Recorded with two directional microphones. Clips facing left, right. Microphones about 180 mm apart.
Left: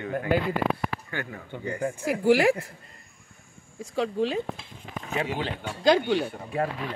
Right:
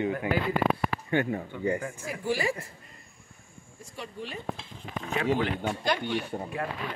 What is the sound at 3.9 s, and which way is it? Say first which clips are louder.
Speech: left 13 dB; 90° left.